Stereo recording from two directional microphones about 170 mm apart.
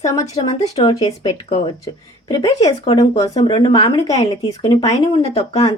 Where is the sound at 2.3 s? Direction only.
25° left (ahead or behind).